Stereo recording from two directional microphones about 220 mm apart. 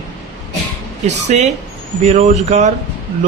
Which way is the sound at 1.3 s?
30° right (ahead or behind).